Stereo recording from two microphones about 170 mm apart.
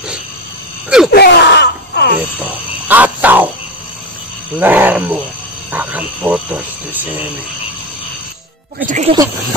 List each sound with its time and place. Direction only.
0.8 s a sound: 5° right (ahead or behind)
1.1 s wail: 75° left (ahead or behind)
2.4 s frog: 10° right (ahead or behind)
4.6 s wild animals: 10° right (ahead or behind)
5.7 s speech: 10° right (ahead or behind)
8.7 s speech: 45° right (ahead or behind)